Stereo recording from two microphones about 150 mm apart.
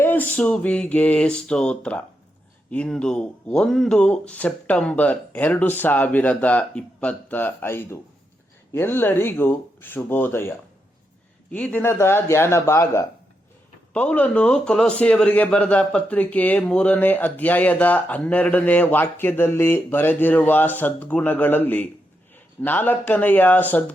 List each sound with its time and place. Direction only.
0.0 s speech: 10° left (ahead or behind)
11.5 s speech: 10° left (ahead or behind)